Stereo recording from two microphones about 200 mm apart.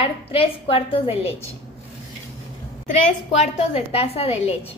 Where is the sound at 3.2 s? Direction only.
30° left (ahead or behind).